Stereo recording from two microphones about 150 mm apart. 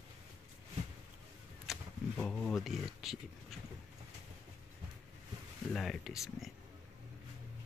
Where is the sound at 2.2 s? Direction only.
10° left (ahead or behind).